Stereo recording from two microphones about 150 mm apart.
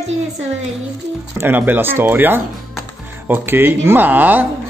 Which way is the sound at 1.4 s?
10° right (ahead or behind).